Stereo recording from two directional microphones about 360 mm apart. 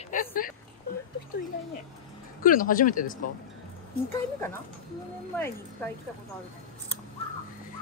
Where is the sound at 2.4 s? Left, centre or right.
Left.